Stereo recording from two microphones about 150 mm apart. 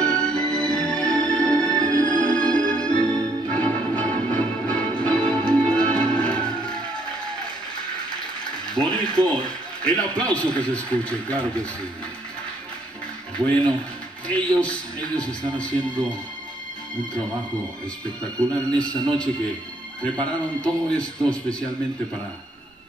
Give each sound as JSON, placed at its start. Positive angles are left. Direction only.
{"t": 0.0, "sound": "music", "side_deg": 5}
{"t": 1.8, "sound": "music", "side_deg": -25}
{"t": 2.3, "sound": "music", "side_deg": 5}
{"t": 8.7, "sound": "a sound", "side_deg": 5}
{"t": 9.8, "sound": "a man's voice", "side_deg": 5}
{"t": 14.3, "sound": "a man's voice", "side_deg": 5}
{"t": 18.8, "sound": "a man's voice", "side_deg": 5}